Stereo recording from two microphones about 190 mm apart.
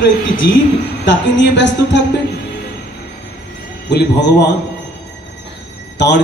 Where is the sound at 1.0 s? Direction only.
70° left (ahead or behind).